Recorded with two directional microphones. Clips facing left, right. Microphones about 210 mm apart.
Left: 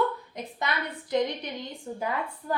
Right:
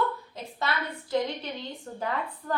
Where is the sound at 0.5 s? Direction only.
15° left (ahead or behind).